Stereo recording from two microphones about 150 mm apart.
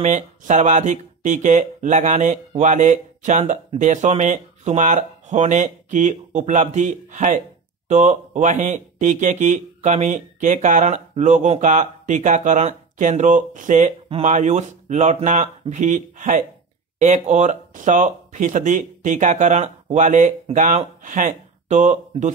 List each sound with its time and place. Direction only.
0.0 s speech: 55° right (ahead or behind)
22.1 s speech: 35° right (ahead or behind)